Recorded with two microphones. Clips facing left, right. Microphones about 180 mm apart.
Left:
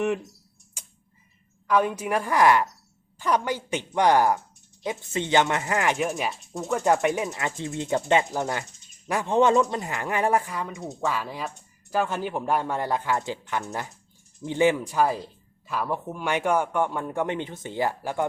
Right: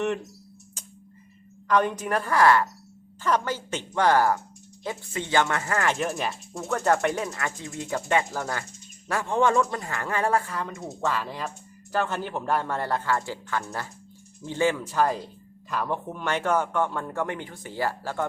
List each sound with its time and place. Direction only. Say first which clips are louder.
0.8 s tick: even; 10° left (ahead or behind)
1.6 s speech: even; 5° left (ahead or behind)
10.7 s speech: even; centre (ahead or behind); by 18.3 s 15° left (ahead or behind)